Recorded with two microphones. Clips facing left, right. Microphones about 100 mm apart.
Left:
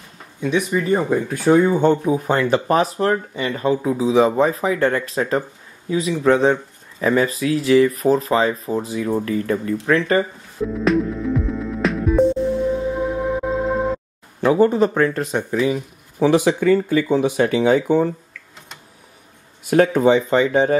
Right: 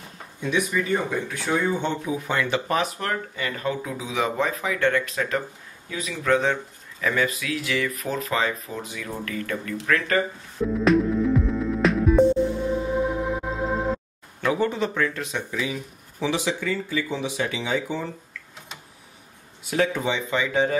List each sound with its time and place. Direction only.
0.4 s speech: 25° left (ahead or behind)
0.8 s speech: 40° left (ahead or behind)
10.6 s music: centre (ahead or behind)
14.4 s speech: 35° left (ahead or behind)
19.6 s speech: 50° left (ahead or behind)